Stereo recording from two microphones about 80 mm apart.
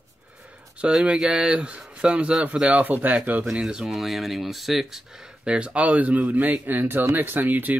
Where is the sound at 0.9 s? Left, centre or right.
Centre.